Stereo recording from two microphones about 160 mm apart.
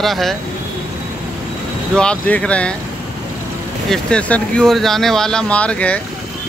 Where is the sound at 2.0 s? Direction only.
5° left (ahead or behind).